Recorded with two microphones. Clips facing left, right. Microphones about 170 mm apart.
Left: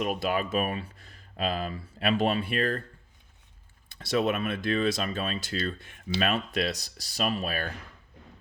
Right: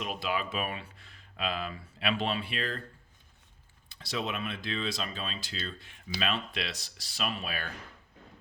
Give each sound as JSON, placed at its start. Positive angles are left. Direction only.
{"t": 0.0, "sound": "speech", "side_deg": 50}
{"t": 3.9, "sound": "speech", "side_deg": 50}